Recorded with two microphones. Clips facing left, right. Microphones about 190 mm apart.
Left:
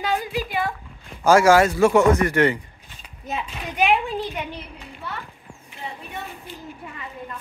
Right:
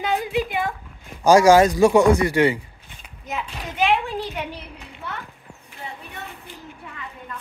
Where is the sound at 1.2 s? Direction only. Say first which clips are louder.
Right 2 dB; 15° right (ahead or behind).